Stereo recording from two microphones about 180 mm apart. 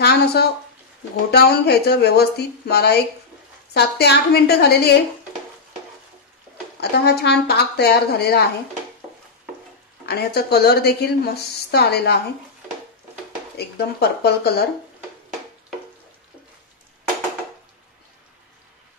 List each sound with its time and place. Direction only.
0.0 s a sound: 65° left (ahead or behind)
1.3 s a woman's voice: 65° left (ahead or behind)
6.8 s a woman's voice: 65° left (ahead or behind)
10.0 s a woman's voice: 65° left (ahead or behind)
13.6 s a woman's voice: 65° left (ahead or behind)